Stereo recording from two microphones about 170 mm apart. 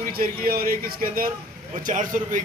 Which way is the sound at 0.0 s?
60° right (ahead or behind).